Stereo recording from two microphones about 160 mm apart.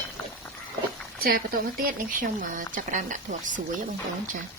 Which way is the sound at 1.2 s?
70° right (ahead or behind).